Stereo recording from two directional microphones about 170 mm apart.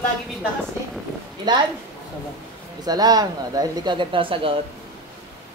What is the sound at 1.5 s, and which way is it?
Speech, 25° right (ahead or behind).